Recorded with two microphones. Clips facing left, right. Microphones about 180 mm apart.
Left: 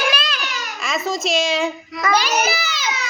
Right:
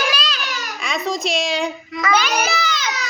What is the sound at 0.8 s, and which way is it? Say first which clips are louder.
A woman's voice: even; centre (ahead or behind).